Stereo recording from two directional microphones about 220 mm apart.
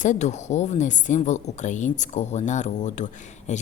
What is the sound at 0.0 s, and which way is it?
A woman's voice, 30° left (ahead or behind).